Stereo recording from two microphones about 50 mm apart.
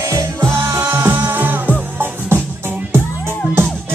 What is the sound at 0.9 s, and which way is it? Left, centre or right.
Music, right.